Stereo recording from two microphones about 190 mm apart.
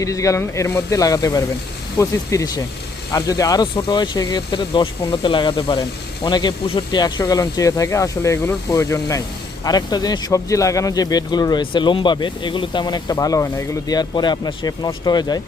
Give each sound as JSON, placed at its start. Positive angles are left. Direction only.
{"t": 0.0, "sound": "speech", "side_deg": 15}